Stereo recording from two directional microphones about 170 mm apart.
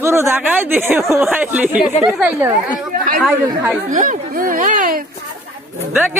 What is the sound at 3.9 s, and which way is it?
Speech, 50° right (ahead or behind).